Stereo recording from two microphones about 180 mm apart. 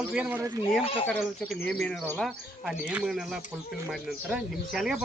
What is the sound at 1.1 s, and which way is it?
Speech, 10° left (ahead or behind).